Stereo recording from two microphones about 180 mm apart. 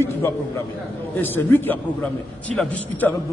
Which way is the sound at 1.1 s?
10° left (ahead or behind).